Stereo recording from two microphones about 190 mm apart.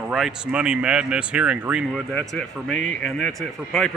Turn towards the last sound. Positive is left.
turn(degrees=0)  # may be behind; listen again after turning